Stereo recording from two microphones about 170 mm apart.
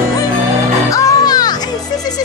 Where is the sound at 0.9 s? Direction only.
20° left (ahead or behind).